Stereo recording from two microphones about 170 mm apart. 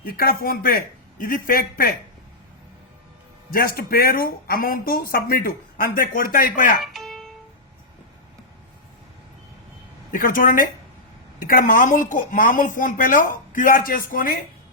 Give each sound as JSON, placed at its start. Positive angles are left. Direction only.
{"t": 0.0, "sound": "speech", "side_deg": 60}
{"t": 3.5, "sound": "speech", "side_deg": 60}
{"t": 6.9, "sound": "music", "side_deg": 0}
{"t": 10.1, "sound": "a woman's voice", "side_deg": 55}